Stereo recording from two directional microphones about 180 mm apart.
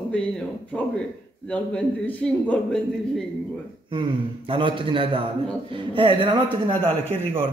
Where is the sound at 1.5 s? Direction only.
5° left (ahead or behind).